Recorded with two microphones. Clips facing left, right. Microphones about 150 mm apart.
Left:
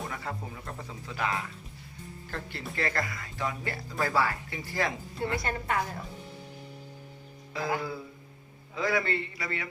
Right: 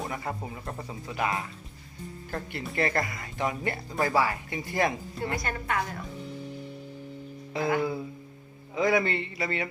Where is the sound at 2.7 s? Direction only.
20° right (ahead or behind).